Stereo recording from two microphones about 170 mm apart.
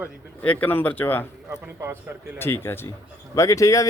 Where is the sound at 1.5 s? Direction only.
15° right (ahead or behind).